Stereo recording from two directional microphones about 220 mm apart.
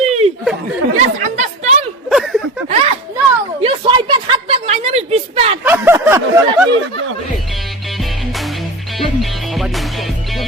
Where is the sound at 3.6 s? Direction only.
25° right (ahead or behind).